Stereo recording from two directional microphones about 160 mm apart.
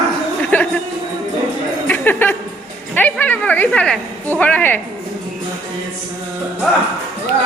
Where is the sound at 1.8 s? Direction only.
10° left (ahead or behind).